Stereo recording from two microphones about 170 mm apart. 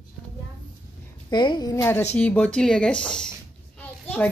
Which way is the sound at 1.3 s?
25° left (ahead or behind).